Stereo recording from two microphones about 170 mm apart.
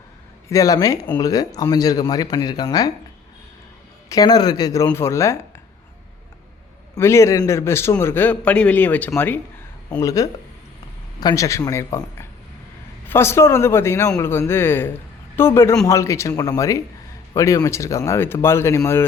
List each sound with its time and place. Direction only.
0.4 s speech: 20° left (ahead or behind)
4.1 s a man's voice: 20° left (ahead or behind)
6.9 s a man's voice: 15° left (ahead or behind)